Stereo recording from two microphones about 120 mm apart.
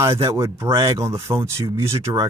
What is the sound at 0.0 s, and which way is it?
Speech, 20° right (ahead or behind).